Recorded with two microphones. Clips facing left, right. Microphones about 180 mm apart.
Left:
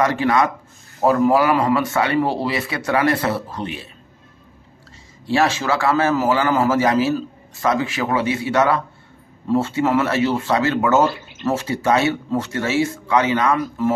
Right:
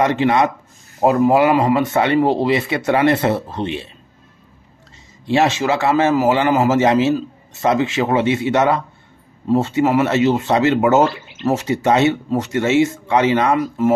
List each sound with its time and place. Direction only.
0.0 s a man's voice: 25° right (ahead or behind)
5.2 s a man's voice: 20° right (ahead or behind)